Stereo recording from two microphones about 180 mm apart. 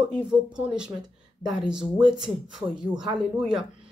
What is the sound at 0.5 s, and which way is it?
Speech, 5° right (ahead or behind).